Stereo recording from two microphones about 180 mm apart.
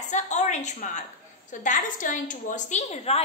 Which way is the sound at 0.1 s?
40° left (ahead or behind).